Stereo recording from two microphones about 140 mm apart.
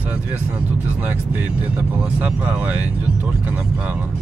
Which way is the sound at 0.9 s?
15° right (ahead or behind).